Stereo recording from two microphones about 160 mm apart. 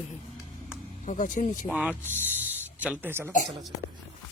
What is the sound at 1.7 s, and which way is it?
Speech, 5° right (ahead or behind).